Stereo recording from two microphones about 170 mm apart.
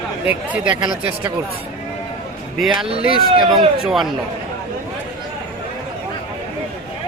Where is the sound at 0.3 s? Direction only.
10° right (ahead or behind).